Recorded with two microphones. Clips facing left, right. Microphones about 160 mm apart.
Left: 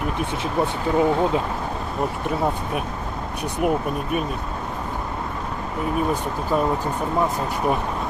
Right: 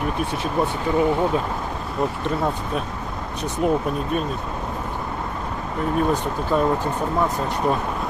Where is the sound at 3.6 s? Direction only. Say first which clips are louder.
Right 1 dB; 15° left (ahead or behind).